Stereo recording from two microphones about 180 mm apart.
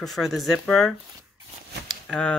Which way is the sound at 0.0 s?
Centre (ahead or behind).